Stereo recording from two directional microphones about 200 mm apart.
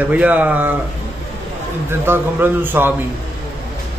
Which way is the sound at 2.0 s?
10° right (ahead or behind).